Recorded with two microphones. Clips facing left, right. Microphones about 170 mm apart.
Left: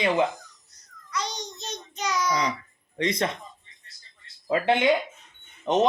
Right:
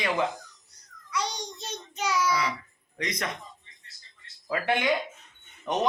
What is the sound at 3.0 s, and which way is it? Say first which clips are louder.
Speech: left 7 dB; 30° left (ahead or behind).